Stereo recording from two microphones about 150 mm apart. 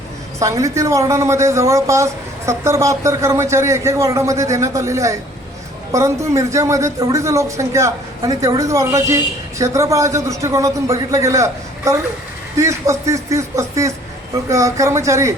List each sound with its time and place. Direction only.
0.3 s speech: 20° right (ahead or behind)
12.5 s speech: 20° right (ahead or behind)